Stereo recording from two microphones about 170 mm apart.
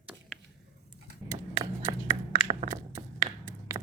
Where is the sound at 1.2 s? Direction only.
20° right (ahead or behind).